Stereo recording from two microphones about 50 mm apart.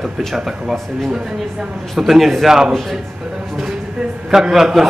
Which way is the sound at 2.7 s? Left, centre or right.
Centre.